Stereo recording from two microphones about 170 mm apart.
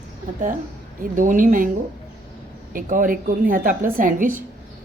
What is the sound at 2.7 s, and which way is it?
A woman's voice, 50° right (ahead or behind).